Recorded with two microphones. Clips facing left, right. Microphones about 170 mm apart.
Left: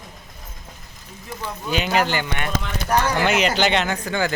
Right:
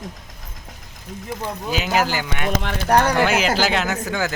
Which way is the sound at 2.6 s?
65° right (ahead or behind).